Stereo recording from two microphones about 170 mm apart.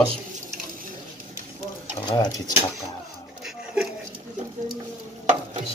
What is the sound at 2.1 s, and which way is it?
Speech, 25° left (ahead or behind).